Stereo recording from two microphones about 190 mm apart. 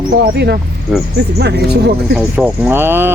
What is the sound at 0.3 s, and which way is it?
Speech, 60° right (ahead or behind).